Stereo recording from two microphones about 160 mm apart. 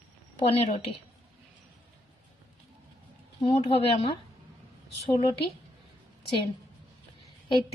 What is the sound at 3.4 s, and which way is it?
Speech, 35° left (ahead or behind).